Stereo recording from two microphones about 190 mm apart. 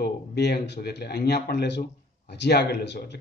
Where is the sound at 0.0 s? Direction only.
60° left (ahead or behind).